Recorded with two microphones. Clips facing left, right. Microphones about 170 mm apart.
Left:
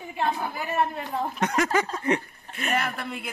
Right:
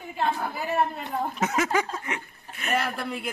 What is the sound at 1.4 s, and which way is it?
A woman's voice, 5° right (ahead or behind).